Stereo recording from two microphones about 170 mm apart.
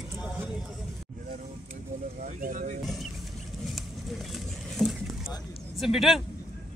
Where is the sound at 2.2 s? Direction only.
50° right (ahead or behind).